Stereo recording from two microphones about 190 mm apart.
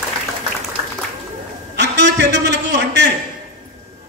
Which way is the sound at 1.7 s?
65° right (ahead or behind).